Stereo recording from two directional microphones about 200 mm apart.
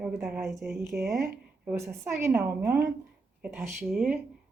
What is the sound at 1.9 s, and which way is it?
A woman's voice, 10° right (ahead or behind).